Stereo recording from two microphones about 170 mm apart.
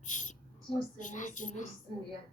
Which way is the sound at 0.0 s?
45° left (ahead or behind).